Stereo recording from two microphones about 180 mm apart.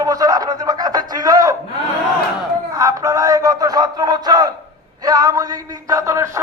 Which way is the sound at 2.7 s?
15° right (ahead or behind).